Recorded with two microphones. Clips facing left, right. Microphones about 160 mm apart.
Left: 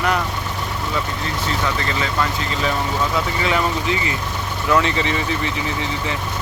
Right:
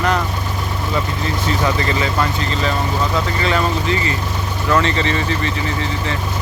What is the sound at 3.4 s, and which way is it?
Speech, 15° left (ahead or behind).